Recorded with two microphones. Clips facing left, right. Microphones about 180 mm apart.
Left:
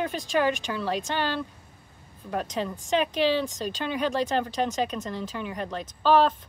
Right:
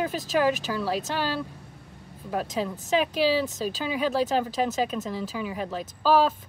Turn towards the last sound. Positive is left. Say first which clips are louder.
# left 1 dB
turn(degrees=-5)  # may be behind; listen again after turning